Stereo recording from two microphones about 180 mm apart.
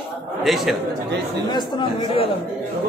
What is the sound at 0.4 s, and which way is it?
Speech, centre (ahead or behind).